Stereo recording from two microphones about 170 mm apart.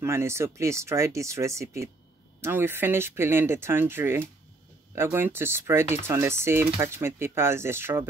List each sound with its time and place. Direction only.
0.0 s speech: 15° right (ahead or behind)